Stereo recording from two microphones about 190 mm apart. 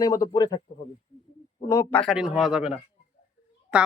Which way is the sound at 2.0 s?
Centre (ahead or behind).